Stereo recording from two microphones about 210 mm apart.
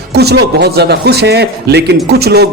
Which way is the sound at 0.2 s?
50° right (ahead or behind).